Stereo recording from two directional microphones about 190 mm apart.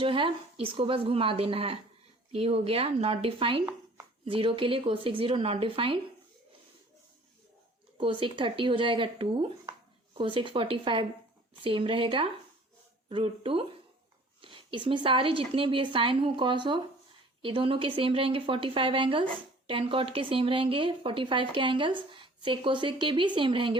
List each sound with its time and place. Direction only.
0.0 s a woman's voice: 25° right (ahead or behind)
7.9 s a woman's voice: 25° right (ahead or behind)